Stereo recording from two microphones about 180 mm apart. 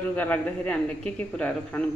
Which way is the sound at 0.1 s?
10° left (ahead or behind).